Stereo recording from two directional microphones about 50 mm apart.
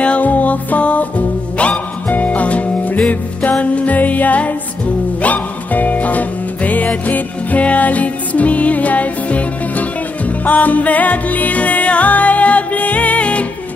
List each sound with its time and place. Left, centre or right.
0.0 s music: left